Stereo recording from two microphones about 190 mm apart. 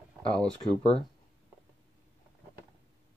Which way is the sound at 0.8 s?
25° right (ahead or behind).